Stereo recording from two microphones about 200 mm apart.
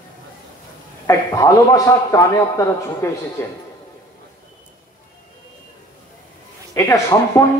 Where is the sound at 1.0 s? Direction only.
15° left (ahead or behind).